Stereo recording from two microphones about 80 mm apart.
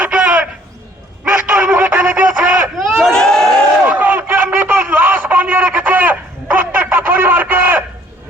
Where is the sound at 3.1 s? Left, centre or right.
Centre.